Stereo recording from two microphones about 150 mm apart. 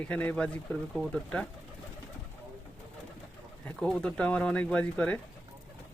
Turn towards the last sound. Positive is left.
turn(degrees=10)  # may be behind; listen again after turning